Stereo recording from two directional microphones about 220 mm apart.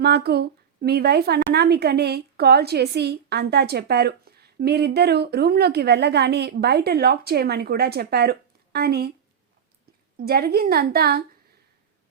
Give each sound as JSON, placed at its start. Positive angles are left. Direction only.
{"t": 0.0, "sound": "a woman's voice", "side_deg": -45}
{"t": 10.2, "sound": "a woman's voice", "side_deg": -45}